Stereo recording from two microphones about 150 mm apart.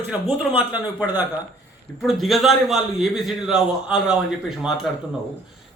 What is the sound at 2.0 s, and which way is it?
A man's voice, centre (ahead or behind).